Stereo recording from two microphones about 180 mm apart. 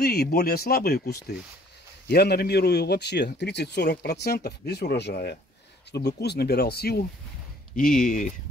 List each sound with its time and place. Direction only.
0.0 s speech: 60° left (ahead or behind)
7.7 s speech: 50° left (ahead or behind)